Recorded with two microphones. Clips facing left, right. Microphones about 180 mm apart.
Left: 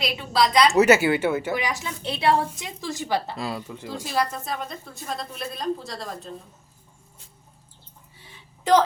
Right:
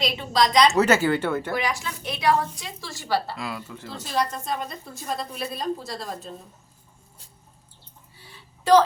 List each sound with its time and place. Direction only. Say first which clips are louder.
0.0 s a woman's voice: even; 5° left (ahead or behind)
1.5 s a woman's voice: right 1 dB; 20° left (ahead or behind)
3.3 s speech: left 3 dB; 35° left (ahead or behind)
3.7 s a woman's voice: left 2 dB; 15° left (ahead or behind); by 6.1 s centre (ahead or behind)
8.2 s a sound: even; 20° left (ahead or behind)